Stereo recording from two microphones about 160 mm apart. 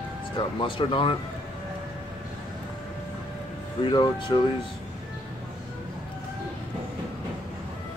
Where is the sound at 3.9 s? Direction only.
30° left (ahead or behind).